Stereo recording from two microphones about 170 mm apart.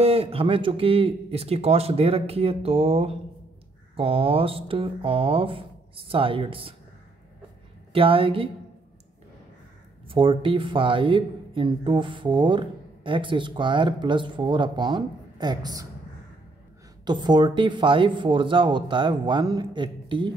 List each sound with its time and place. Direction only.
0.0 s speech: 35° right (ahead or behind)
7.9 s speech: 30° right (ahead or behind)
10.0 s speech: 30° right (ahead or behind)
17.0 s speech: 25° right (ahead or behind)